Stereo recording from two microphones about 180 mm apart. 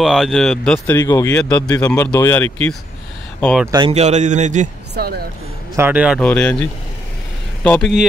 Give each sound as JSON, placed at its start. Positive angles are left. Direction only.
{"t": 0.0, "sound": "speech", "side_deg": 0}
{"t": 3.9, "sound": "a man's voice", "side_deg": -40}
{"t": 4.9, "sound": "speech", "side_deg": -60}
{"t": 5.8, "sound": "a man's voice", "side_deg": -10}
{"t": 6.1, "sound": "speech", "side_deg": 5}